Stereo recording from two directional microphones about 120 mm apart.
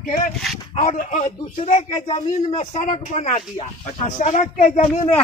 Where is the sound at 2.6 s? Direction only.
75° left (ahead or behind).